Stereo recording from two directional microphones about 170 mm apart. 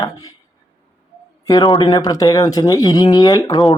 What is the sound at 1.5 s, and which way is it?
Speech, 25° left (ahead or behind).